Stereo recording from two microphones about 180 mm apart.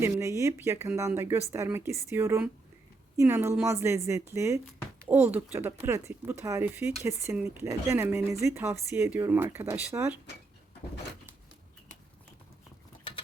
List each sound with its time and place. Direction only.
0.0 s speech: 15° right (ahead or behind)